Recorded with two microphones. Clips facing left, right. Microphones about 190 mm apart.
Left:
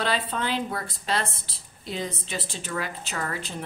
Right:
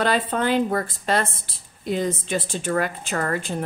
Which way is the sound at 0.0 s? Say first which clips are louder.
Right 6 dB; 50° right (ahead or behind).